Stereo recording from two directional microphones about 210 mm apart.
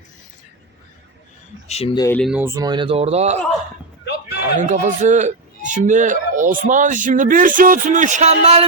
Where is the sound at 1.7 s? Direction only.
25° left (ahead or behind).